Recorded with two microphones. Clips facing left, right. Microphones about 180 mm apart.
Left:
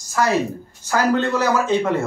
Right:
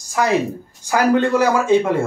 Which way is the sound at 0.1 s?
15° right (ahead or behind).